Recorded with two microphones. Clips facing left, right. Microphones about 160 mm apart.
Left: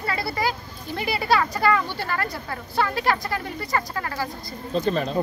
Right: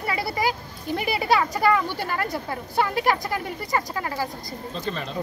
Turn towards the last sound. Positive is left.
turn(degrees=40)  # may be behind; listen again after turning